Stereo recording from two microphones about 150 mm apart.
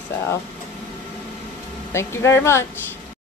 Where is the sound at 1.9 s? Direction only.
15° left (ahead or behind).